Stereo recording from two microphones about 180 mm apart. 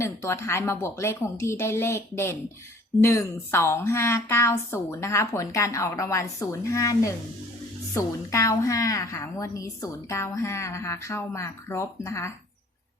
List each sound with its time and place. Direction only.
0.0 s a woman's voice: 15° left (ahead or behind)